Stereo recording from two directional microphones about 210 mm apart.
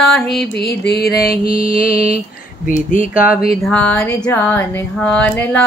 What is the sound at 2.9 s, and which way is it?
Speech, 40° left (ahead or behind).